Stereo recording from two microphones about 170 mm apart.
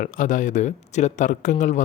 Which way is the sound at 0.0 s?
50° left (ahead or behind).